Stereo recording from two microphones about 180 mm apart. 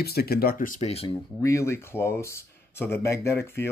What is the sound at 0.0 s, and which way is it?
Speech, 60° left (ahead or behind).